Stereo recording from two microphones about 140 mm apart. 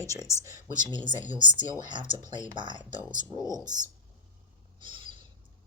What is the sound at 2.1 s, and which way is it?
Speech, 60° left (ahead or behind).